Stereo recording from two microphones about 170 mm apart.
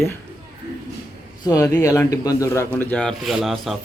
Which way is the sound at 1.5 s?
20° left (ahead or behind).